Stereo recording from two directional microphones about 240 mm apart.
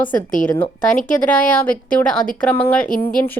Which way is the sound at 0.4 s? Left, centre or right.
Centre.